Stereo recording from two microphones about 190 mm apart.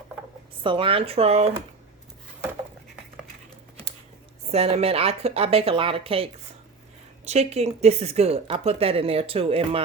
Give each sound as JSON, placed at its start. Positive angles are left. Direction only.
{"t": 0.6, "sound": "a woman's voice", "side_deg": -25}
{"t": 4.5, "sound": "a woman's voice", "side_deg": -30}